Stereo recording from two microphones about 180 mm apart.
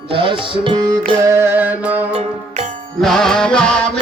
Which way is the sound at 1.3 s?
15° right (ahead or behind).